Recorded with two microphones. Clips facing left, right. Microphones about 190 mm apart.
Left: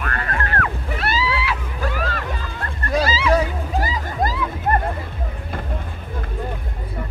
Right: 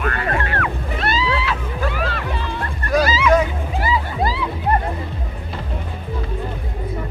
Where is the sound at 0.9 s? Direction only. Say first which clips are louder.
Right 2 dB; 10° left (ahead or behind).